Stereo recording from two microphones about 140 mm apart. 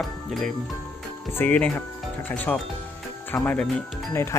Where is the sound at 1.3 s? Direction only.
15° left (ahead or behind).